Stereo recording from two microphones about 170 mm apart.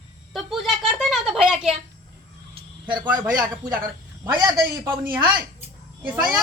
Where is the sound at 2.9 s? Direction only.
30° right (ahead or behind).